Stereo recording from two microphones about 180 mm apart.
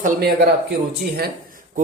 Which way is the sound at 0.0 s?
60° right (ahead or behind).